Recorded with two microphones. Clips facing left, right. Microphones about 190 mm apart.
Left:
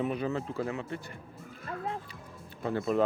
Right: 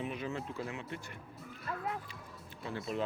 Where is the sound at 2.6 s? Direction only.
50° left (ahead or behind).